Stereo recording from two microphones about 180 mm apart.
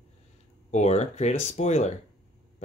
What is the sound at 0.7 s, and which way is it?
Speech, 40° left (ahead or behind).